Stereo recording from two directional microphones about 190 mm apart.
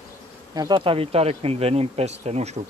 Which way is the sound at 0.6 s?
25° right (ahead or behind).